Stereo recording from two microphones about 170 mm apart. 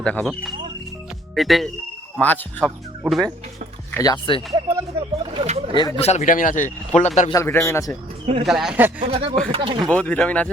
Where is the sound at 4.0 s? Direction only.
25° left (ahead or behind).